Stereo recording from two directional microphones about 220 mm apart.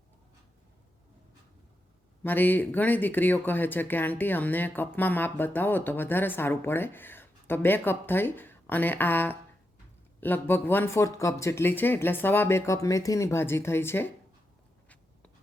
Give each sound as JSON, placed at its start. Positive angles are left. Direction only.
{"t": 2.2, "sound": "speech", "side_deg": 10}